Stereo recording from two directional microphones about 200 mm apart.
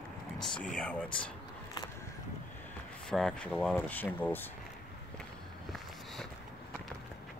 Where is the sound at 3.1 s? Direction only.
5° left (ahead or behind).